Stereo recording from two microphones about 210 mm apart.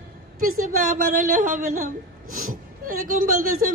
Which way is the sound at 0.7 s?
40° right (ahead or behind).